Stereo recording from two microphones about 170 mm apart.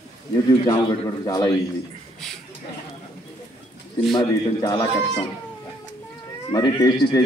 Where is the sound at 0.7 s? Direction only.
25° left (ahead or behind).